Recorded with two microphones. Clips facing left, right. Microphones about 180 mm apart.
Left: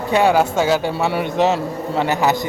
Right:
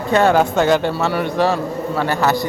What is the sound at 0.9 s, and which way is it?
A man's voice, 25° left (ahead or behind).